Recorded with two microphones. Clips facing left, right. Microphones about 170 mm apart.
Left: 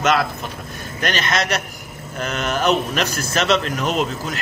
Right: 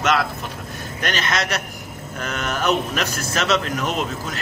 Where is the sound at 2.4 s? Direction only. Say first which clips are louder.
Left 2 dB; 30° left (ahead or behind).